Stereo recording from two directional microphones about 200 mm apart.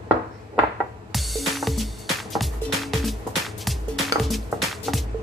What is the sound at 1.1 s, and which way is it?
Music, centre (ahead or behind).